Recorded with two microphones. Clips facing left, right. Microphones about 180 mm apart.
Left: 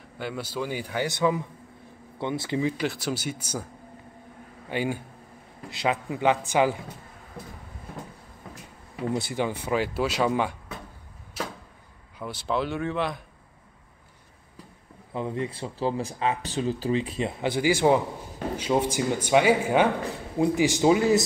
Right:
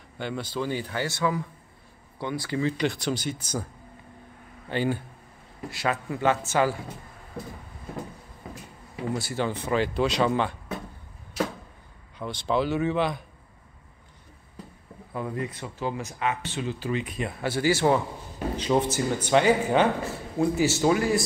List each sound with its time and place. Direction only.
0.2 s speech: 5° left (ahead or behind)
2.8 s speech: 5° left (ahead or behind)
4.6 s speech: 10° left (ahead or behind)
9.1 s speech: 15° left (ahead or behind)
12.2 s speech: 5° left (ahead or behind)
15.1 s speech: 25° left (ahead or behind)